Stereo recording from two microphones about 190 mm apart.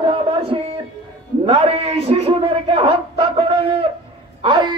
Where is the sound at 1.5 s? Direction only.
30° right (ahead or behind).